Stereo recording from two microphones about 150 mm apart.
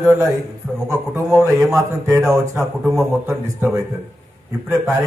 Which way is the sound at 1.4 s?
20° right (ahead or behind).